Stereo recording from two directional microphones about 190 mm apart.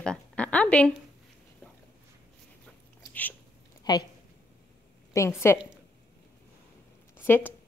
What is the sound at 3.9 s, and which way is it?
Speech, 20° left (ahead or behind).